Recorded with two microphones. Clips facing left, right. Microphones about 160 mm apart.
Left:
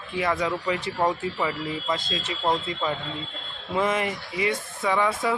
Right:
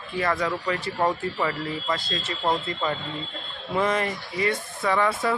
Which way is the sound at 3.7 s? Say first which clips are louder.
Even; 15° left (ahead or behind).